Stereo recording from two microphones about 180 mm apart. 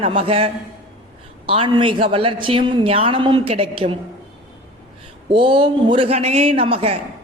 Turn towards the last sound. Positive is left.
turn(degrees=-30)  # may be behind; listen again after turning